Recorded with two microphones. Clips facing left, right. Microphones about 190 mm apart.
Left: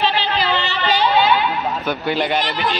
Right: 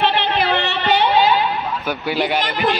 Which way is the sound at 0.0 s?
60° right (ahead or behind).